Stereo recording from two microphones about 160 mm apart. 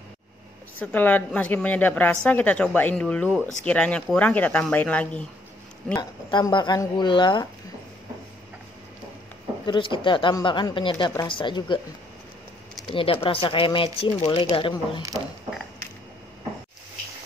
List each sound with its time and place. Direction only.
0.7 s speech: 10° left (ahead or behind)
5.9 s speech: 25° left (ahead or behind)
9.7 s speech: 30° left (ahead or behind)
12.9 s speech: 35° left (ahead or behind)
15.0 s speech: 20° right (ahead or behind)